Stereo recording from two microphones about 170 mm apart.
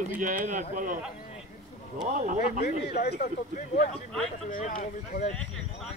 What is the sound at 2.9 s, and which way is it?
Speech, 45° left (ahead or behind).